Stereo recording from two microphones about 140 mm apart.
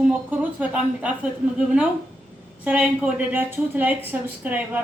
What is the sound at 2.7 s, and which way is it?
A woman's voice, 10° right (ahead or behind).